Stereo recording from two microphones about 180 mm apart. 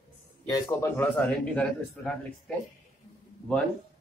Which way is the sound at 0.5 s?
15° left (ahead or behind).